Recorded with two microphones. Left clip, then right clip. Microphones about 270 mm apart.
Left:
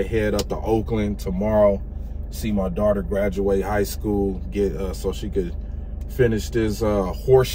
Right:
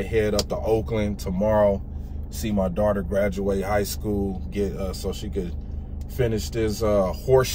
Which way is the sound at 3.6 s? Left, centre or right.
Centre.